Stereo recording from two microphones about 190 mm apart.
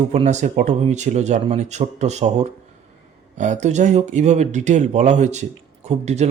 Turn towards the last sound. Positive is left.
turn(degrees=-35)  # may be behind; listen again after turning